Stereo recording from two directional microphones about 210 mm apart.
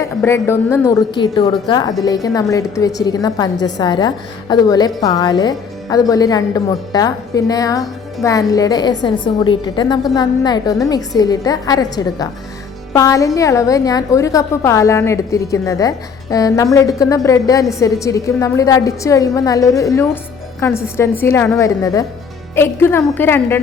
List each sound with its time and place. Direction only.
0.0 s a woman's voice: 10° left (ahead or behind)